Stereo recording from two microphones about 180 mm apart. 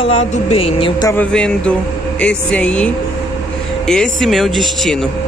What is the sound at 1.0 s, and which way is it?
Speech, 15° left (ahead or behind).